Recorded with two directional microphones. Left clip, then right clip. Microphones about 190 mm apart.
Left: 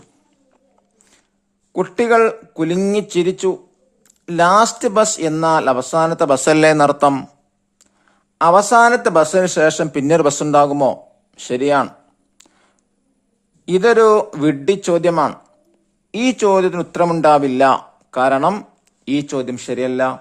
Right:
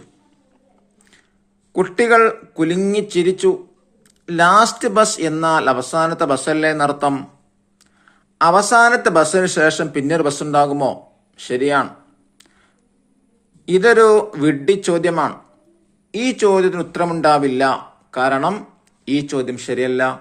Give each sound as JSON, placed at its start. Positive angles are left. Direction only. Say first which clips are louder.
{"t": 1.7, "sound": "a man's voice", "louder": "right 1 dB", "side_deg": 40}
{"t": 8.0, "sound": "a man's voice", "louder": "left 1 dB", "side_deg": 40}
{"t": 12.4, "sound": "a sound", "louder": "left 1 dB", "side_deg": 40}
{"t": 13.7, "sound": "a man's voice", "louder": "even", "side_deg": 40}